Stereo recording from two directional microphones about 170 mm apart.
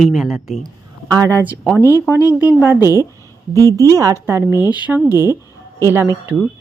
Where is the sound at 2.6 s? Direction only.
10° right (ahead or behind).